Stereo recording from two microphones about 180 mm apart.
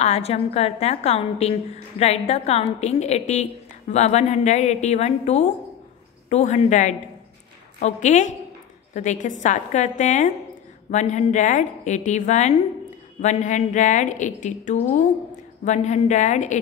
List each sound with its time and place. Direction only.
0.0 s a woman's voice: 35° left (ahead or behind)